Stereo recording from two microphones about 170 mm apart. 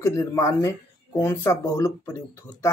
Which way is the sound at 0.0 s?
15° left (ahead or behind).